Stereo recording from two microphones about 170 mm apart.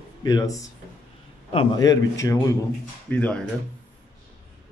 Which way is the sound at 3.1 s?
10° left (ahead or behind).